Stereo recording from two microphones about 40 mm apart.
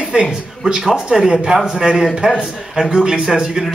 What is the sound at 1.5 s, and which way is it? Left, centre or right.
Speech, centre.